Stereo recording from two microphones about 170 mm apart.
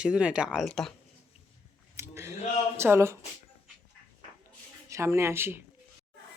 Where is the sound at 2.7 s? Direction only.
15° right (ahead or behind).